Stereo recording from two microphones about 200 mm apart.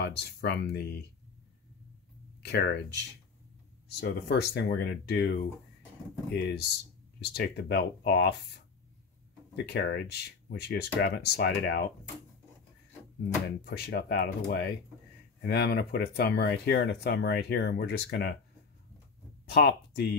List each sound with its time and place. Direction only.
0.0 s speech: 55° left (ahead or behind)
2.4 s speech: 55° left (ahead or behind)
4.0 s speech: 55° left (ahead or behind)
9.6 s speech: 55° left (ahead or behind)
13.7 s speech: 50° left (ahead or behind)
19.4 s speech: 55° left (ahead or behind)